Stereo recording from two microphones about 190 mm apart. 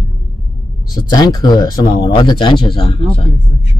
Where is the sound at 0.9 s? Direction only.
20° left (ahead or behind).